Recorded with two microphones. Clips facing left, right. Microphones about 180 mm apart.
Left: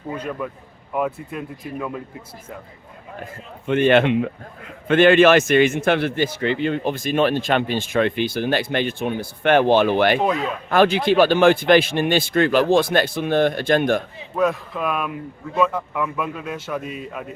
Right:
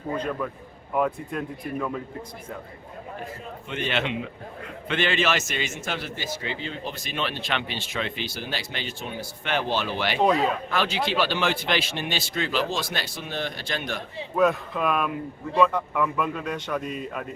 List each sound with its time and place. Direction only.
0.2 s a man's voice: 5° left (ahead or behind)
3.7 s a man's voice: 55° left (ahead or behind)
14.3 s a man's voice: centre (ahead or behind)